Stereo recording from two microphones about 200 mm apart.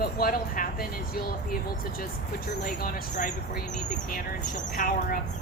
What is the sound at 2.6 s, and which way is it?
Speech, 45° left (ahead or behind).